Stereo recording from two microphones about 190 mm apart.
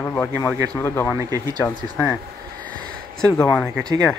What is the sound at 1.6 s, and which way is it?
Speech, 10° left (ahead or behind).